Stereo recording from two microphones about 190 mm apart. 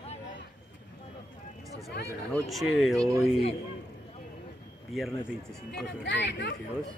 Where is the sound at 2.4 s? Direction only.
Centre (ahead or behind).